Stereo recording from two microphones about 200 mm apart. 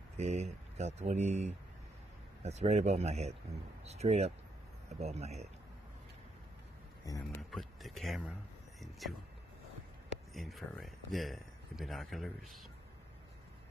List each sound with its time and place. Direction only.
0.2 s speech: 35° right (ahead or behind)
7.1 s speech: 15° left (ahead or behind)
7.5 s speech: centre (ahead or behind)
10.3 s speech: centre (ahead or behind)